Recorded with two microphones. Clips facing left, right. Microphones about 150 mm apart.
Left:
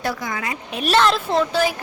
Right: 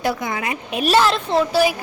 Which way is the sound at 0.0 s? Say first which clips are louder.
Right 3 dB; 20° right (ahead or behind).